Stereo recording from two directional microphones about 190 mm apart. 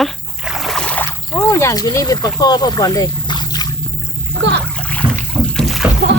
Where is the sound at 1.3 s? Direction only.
15° left (ahead or behind).